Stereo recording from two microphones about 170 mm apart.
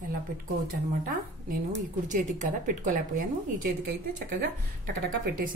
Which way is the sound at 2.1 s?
50° right (ahead or behind).